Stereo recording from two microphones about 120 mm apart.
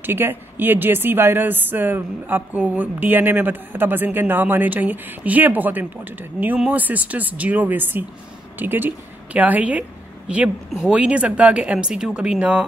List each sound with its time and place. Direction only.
0.0 s speech: 15° right (ahead or behind)